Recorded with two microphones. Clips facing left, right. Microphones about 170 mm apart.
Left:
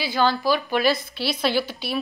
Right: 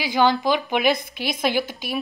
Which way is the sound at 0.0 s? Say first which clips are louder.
Right 2 dB; 15° right (ahead or behind).